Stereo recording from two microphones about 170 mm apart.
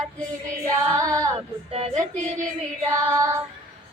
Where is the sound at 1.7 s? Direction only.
40° right (ahead or behind).